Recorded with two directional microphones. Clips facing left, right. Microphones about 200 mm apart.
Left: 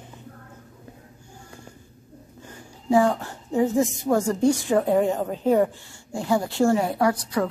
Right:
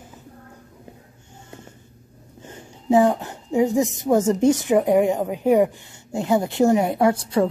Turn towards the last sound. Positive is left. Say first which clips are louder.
# right 4 dB
turn(degrees=-25)  # may be behind; listen again after turning